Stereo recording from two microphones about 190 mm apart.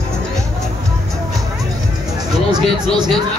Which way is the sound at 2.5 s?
20° right (ahead or behind).